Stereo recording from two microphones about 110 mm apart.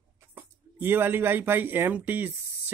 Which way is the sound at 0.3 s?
15° right (ahead or behind).